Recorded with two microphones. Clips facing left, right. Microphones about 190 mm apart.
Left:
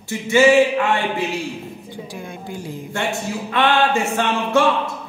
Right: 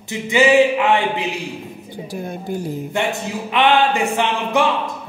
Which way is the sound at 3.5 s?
15° right (ahead or behind).